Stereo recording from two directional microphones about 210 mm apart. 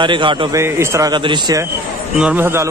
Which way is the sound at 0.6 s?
15° right (ahead or behind).